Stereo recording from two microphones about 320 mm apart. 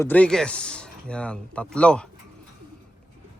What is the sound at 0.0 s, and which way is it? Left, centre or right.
Speech, centre.